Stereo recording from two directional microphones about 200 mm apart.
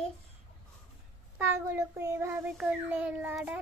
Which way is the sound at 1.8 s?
15° right (ahead or behind).